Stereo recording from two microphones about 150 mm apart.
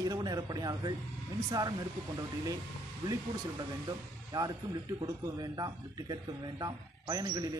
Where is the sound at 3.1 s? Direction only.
25° right (ahead or behind).